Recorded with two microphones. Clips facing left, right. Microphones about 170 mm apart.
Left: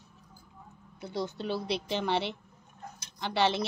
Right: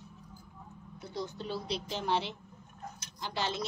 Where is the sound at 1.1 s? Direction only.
75° left (ahead or behind).